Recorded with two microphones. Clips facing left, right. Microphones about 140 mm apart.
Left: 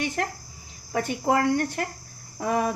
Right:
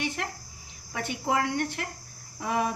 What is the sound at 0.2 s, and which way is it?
A woman's voice, 45° left (ahead or behind).